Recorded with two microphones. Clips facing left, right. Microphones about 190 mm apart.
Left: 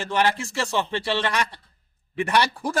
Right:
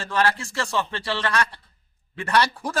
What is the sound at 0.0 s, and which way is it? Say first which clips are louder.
A man's voice: left 1 dB; 20° left (ahead or behind).